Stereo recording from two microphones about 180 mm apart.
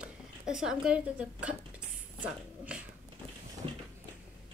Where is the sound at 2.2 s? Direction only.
5° right (ahead or behind).